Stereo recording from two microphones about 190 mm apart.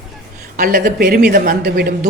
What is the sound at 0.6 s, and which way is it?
Speech, 45° right (ahead or behind).